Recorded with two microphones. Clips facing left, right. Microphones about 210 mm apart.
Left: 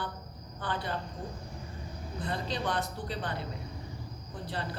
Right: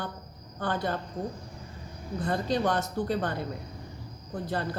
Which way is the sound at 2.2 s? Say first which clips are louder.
Right 7 dB; 45° right (ahead or behind).